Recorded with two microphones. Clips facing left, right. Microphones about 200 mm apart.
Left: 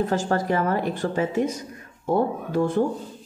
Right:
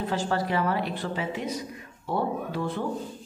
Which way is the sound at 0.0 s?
45° left (ahead or behind).